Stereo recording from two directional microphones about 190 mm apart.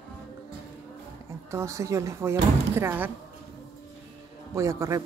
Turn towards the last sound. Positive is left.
turn(degrees=-15)  # may be behind; listen again after turning